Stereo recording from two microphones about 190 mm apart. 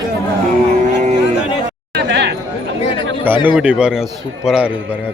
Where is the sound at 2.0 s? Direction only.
60° right (ahead or behind).